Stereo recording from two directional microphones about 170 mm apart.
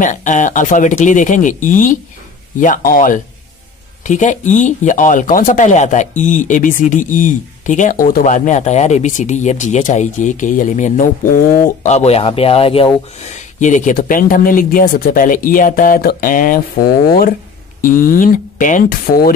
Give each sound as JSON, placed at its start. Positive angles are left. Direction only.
{"t": 0.0, "sound": "speech", "side_deg": 50}
{"t": 13.6, "sound": "speech", "side_deg": 45}